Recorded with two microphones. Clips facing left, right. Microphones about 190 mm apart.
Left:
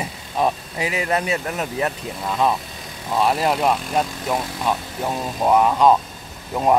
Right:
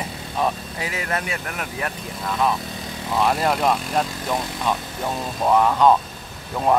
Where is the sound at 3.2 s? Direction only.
10° left (ahead or behind).